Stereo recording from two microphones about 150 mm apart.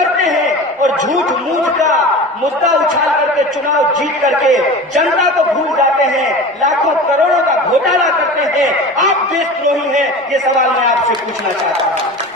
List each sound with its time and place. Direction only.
4.4 s a man's voice: 55° right (ahead or behind)